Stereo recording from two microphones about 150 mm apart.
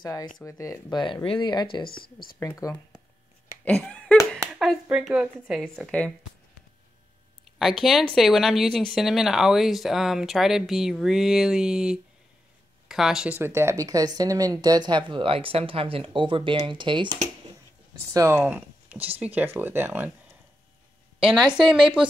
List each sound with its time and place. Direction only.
0.0 s speech: 30° left (ahead or behind)
1.9 s speech: 80° left
2.4 s speech: 20° left (ahead or behind)
3.6 s a sound: 10° left (ahead or behind)
4.6 s speech: 5° right (ahead or behind)
5.9 s speech: 10° left (ahead or behind)
7.5 s speech: centre (ahead or behind)
13.4 s speech: 15° right (ahead or behind); by 17.1 s 30° right (ahead or behind)
18.1 s speech: 15° right (ahead or behind)